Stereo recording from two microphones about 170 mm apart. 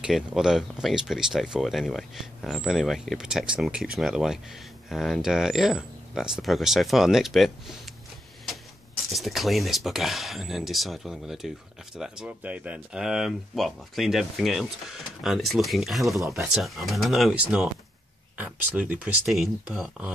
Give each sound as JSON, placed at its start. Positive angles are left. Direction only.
{"t": 0.0, "sound": "speech", "side_deg": -5}
{"t": 9.1, "sound": "speech", "side_deg": 0}